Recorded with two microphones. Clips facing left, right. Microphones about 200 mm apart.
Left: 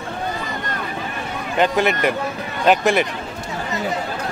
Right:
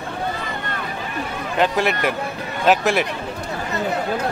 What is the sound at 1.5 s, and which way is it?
Speech, centre (ahead or behind).